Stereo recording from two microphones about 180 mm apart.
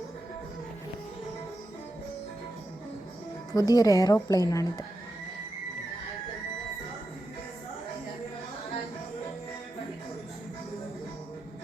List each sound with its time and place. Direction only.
3.5 s a woman's voice: 20° left (ahead or behind)